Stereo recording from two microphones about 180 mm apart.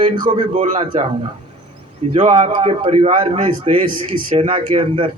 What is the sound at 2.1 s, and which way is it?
A man's voice, 40° right (ahead or behind).